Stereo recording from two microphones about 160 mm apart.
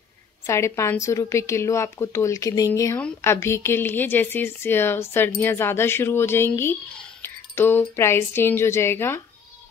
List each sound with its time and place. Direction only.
0.5 s a woman's voice: 15° left (ahead or behind)